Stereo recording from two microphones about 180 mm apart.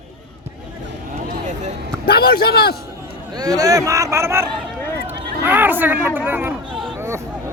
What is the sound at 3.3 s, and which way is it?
Speech, 20° right (ahead or behind).